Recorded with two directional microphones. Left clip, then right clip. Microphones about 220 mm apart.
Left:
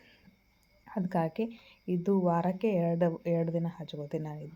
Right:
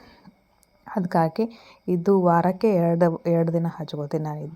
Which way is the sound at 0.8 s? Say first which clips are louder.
Right 10 dB; 25° right (ahead or behind).